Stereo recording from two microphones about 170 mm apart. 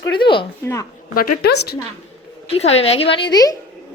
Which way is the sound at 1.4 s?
75° left (ahead or behind).